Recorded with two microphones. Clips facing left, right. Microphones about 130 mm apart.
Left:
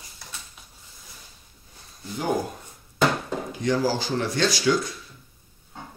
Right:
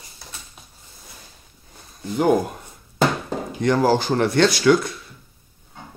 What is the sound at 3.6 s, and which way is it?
Speech, 60° right (ahead or behind).